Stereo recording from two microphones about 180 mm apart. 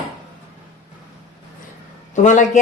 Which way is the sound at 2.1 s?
45° left (ahead or behind).